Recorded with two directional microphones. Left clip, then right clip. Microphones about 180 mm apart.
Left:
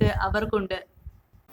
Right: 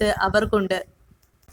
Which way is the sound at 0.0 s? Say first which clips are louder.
Right 5 dB; 45° right (ahead or behind).